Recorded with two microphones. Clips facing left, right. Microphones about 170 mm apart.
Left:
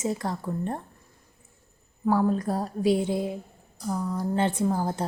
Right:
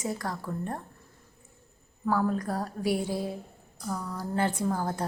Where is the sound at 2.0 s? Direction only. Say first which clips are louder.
Left 4 dB; 25° left (ahead or behind).